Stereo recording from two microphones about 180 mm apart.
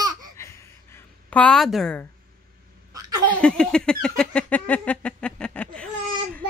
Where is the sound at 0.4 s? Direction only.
15° left (ahead or behind).